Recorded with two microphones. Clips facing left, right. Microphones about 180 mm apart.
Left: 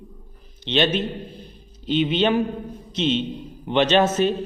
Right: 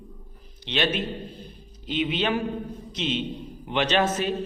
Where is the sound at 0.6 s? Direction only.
25° left (ahead or behind).